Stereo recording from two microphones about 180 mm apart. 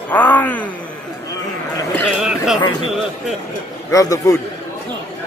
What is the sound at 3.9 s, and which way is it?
Speech, 20° left (ahead or behind).